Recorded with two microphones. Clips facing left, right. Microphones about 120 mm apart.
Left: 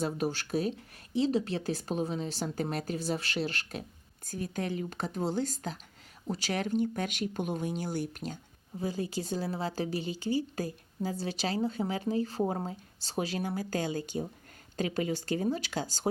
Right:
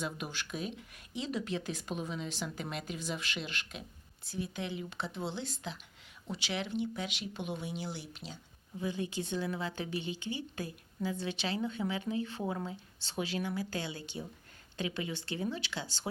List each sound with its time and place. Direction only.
0.0 s speech: 40° left (ahead or behind)
8.8 s speech: 40° left (ahead or behind)